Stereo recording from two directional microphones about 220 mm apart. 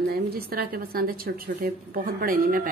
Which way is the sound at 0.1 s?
45° right (ahead or behind).